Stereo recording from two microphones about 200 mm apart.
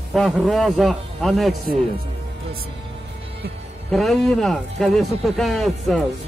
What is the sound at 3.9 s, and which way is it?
Speech, centre (ahead or behind).